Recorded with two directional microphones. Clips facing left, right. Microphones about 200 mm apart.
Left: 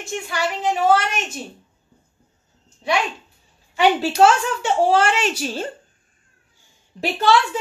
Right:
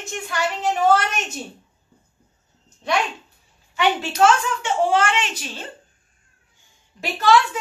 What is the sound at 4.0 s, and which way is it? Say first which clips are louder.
A woman's voice: left 2 dB; 35° left (ahead or behind).